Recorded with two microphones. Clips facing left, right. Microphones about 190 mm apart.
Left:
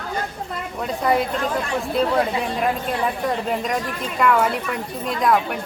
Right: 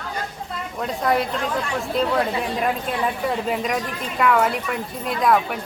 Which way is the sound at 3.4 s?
5° right (ahead or behind).